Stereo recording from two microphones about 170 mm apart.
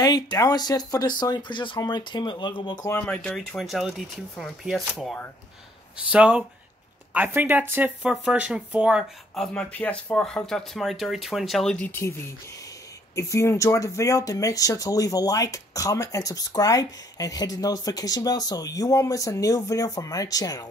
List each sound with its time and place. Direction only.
0.0 s speech: 25° left (ahead or behind)
2.9 s speech: 10° left (ahead or behind)